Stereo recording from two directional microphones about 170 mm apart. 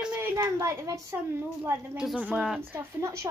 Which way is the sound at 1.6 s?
5° right (ahead or behind).